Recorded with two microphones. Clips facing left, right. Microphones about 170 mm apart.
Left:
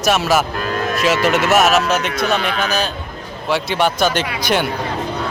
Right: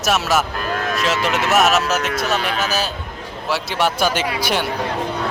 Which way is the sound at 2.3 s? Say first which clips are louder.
Left 2 dB; 40° right (ahead or behind).